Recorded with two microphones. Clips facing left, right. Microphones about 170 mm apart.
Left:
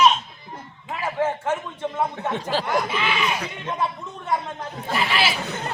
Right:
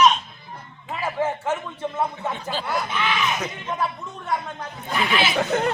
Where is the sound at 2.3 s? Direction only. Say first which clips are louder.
Left 4 dB; 90° left.